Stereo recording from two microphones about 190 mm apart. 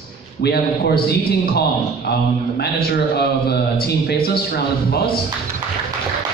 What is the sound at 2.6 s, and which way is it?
A man's voice, 60° left (ahead or behind).